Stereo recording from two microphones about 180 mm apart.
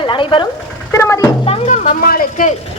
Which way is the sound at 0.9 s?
15° left (ahead or behind).